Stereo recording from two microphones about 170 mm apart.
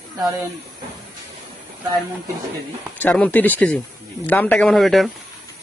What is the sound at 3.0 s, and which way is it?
Speech, 10° left (ahead or behind).